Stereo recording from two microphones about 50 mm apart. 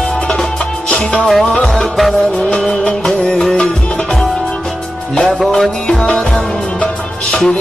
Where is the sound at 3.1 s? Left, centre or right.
Centre.